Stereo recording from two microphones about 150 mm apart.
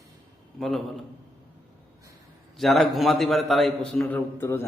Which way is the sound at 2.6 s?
Centre (ahead or behind).